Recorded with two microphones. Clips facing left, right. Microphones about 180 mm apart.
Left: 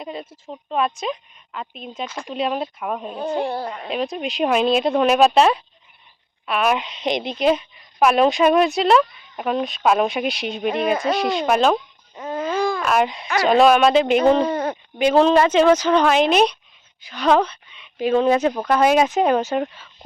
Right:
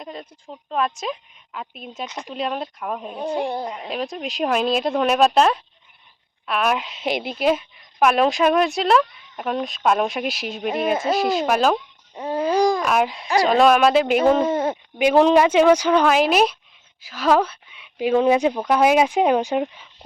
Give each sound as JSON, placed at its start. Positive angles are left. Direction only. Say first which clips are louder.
{"t": 0.0, "sound": "speech", "louder": "left 3 dB", "side_deg": 5}
{"t": 3.1, "sound": "speech", "louder": "even", "side_deg": -15}
{"t": 3.8, "sound": "speech", "louder": "left 3 dB", "side_deg": 0}
{"t": 12.5, "sound": "babbling", "louder": "right 4 dB", "side_deg": -40}
{"t": 12.8, "sound": "speech", "louder": "left 1 dB", "side_deg": 0}